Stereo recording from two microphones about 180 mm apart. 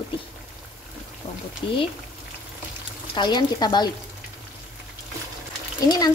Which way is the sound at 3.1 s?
25° left (ahead or behind).